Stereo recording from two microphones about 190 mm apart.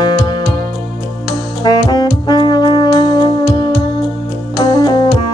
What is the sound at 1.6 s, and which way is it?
Brass instrument, 20° left (ahead or behind).